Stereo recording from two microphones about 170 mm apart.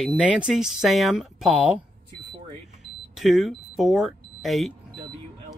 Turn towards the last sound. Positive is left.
turn(degrees=0)  # may be behind; listen again after turning